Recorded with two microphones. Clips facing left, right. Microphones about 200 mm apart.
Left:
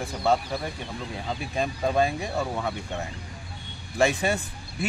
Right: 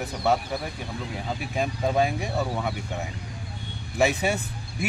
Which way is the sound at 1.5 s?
10° right (ahead or behind).